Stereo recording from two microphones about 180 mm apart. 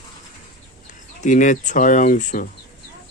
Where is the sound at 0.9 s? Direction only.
45° left (ahead or behind).